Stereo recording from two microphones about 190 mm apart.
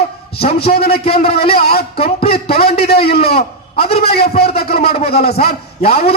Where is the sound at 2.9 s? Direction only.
55° left (ahead or behind).